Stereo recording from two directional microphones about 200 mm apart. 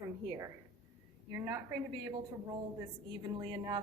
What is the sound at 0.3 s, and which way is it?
A woman's voice, 15° right (ahead or behind).